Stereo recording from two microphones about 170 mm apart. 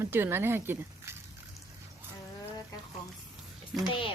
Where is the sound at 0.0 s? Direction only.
15° right (ahead or behind).